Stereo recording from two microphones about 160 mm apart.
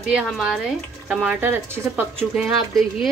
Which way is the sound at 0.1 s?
5° right (ahead or behind).